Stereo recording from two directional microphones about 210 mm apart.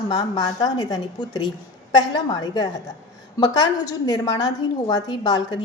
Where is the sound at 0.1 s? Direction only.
20° left (ahead or behind).